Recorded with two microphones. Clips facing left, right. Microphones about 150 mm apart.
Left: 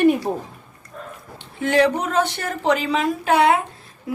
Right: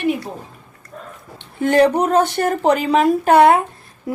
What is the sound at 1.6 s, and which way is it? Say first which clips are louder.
Speech: right 4 dB; 45° right (ahead or behind).